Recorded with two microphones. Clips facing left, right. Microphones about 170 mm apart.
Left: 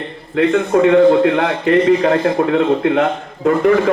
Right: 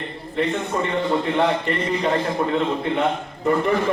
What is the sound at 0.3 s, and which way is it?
A man's voice, 90° left.